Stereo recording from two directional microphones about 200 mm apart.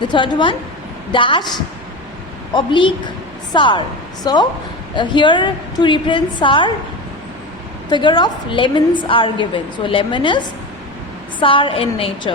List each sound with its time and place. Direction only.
0.1 s a woman's voice: 25° left (ahead or behind)
2.6 s a woman's voice: 25° left (ahead or behind)
7.9 s a woman's voice: 20° left (ahead or behind)